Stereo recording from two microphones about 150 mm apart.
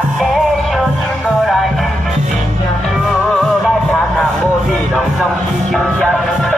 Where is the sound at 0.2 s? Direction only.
Centre (ahead or behind).